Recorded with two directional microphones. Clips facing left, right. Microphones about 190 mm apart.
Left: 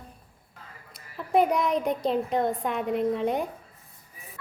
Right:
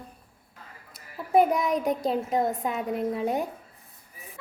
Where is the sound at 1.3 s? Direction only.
5° right (ahead or behind).